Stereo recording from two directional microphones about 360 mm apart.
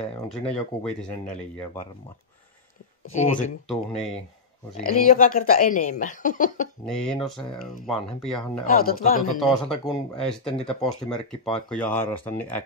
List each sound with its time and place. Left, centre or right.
0.3 s speech: centre
3.1 s speech: left
4.7 s speech: left
6.9 s speech: centre
8.6 s speech: left
9.4 s speech: centre